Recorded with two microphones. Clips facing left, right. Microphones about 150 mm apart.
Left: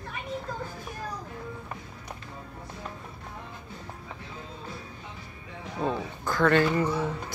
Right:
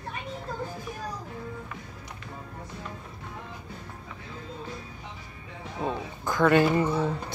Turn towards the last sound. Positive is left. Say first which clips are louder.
# right 2 dB
turn(degrees=-20)  # may be behind; listen again after turning